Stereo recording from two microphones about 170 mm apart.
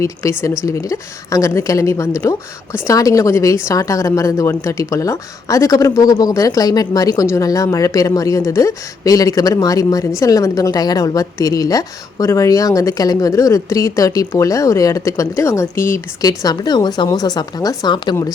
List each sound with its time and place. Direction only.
0.0 s a woman's voice: 15° left (ahead or behind)